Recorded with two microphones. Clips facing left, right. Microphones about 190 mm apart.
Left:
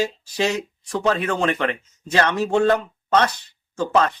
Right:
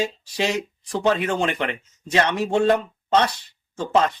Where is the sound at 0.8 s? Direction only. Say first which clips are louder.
Even; 30° right (ahead or behind).